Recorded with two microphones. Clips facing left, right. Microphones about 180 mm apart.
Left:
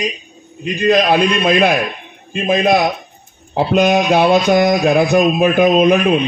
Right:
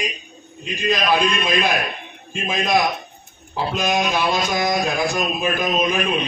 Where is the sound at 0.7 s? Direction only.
60° left (ahead or behind).